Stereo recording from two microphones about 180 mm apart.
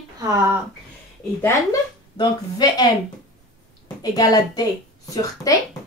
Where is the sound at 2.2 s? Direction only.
20° left (ahead or behind).